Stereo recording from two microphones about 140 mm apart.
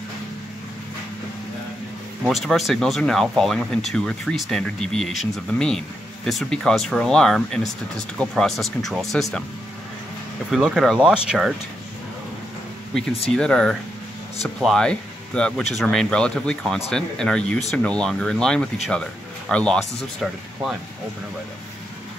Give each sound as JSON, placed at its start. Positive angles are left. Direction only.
{"t": 2.2, "sound": "speech", "side_deg": 0}
{"t": 10.5, "sound": "speech", "side_deg": -5}
{"t": 13.3, "sound": "speech", "side_deg": 5}